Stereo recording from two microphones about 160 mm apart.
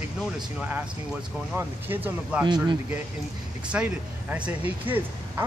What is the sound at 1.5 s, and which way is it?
Speech, 10° right (ahead or behind).